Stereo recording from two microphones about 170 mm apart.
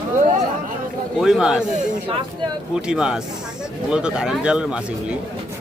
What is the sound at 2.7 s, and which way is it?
Speech, 5° right (ahead or behind).